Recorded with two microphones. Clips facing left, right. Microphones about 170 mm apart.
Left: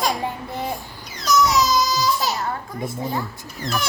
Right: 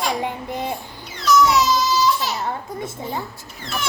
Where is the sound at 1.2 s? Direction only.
40° left (ahead or behind).